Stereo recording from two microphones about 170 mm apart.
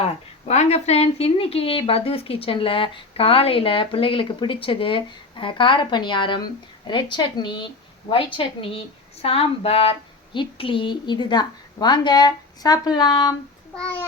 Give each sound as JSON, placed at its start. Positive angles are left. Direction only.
{"t": 0.0, "sound": "a woman's voice", "side_deg": 40}
{"t": 13.7, "sound": "a child's voice", "side_deg": 5}